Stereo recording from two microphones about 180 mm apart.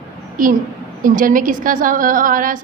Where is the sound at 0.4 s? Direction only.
50° right (ahead or behind).